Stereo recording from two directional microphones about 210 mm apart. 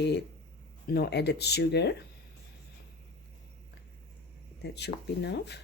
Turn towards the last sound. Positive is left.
turn(degrees=55)  # may be behind; listen again after turning